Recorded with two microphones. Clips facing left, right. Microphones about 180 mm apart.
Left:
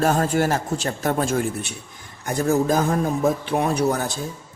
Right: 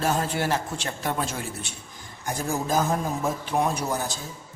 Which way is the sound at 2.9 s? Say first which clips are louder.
Left 6 dB; 70° left (ahead or behind).